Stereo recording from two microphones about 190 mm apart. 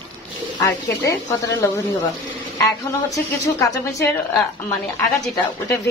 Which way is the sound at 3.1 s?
15° left (ahead or behind).